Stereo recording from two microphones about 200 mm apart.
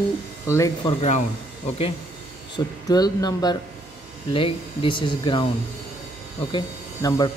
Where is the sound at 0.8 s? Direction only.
35° left (ahead or behind).